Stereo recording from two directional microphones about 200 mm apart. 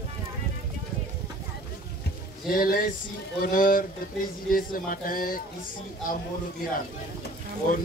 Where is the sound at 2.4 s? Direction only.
45° left (ahead or behind).